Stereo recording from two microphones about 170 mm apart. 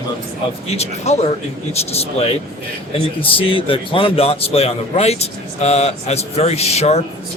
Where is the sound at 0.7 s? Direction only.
40° left (ahead or behind).